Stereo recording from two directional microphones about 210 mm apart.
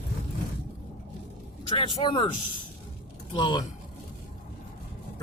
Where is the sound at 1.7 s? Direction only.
25° left (ahead or behind).